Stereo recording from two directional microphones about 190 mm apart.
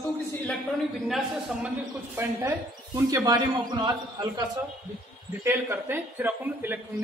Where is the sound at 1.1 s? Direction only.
5° right (ahead or behind); by 4.6 s 20° right (ahead or behind).